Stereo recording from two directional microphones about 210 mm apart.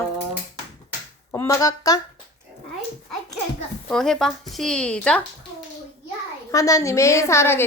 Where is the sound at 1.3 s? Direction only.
15° left (ahead or behind).